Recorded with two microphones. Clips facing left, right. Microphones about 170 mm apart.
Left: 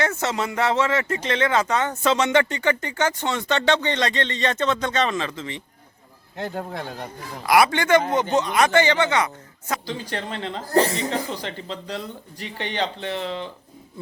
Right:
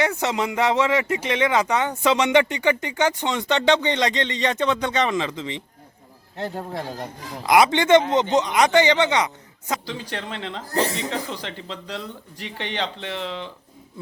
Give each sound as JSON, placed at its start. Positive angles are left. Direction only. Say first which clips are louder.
{"t": 0.0, "sound": "speech", "louder": "right 1 dB", "side_deg": -15}
{"t": 6.4, "sound": "speech", "louder": "even", "side_deg": 0}
{"t": 7.4, "sound": "a man's voice", "louder": "right 1 dB", "side_deg": -20}
{"t": 9.8, "sound": "speech", "louder": "left 2 dB", "side_deg": 0}